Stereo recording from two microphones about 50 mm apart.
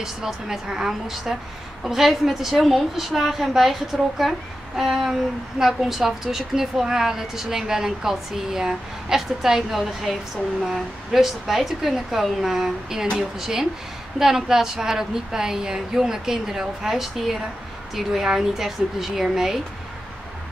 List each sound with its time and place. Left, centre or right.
0.0 s a woman's voice: centre